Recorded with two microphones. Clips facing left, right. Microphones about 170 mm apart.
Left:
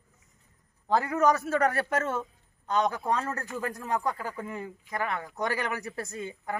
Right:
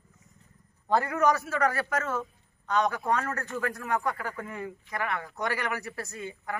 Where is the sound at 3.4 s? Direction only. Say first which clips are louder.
Right 1 dB; 10° left (ahead or behind).